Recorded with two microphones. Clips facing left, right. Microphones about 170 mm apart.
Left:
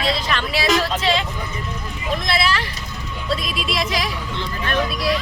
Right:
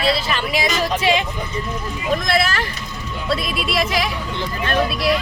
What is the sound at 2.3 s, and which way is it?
Speech, 45° right (ahead or behind).